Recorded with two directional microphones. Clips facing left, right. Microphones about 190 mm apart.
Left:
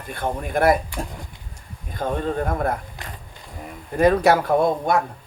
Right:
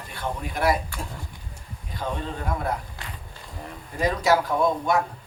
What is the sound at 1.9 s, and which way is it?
Speech, 50° left (ahead or behind).